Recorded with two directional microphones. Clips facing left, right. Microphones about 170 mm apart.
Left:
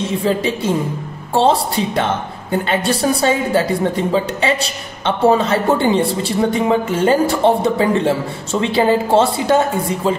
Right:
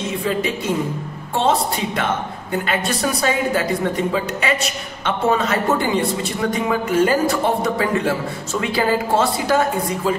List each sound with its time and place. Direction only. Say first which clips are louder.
0.2 s a woman's voice: left 4 dB; 30° left (ahead or behind)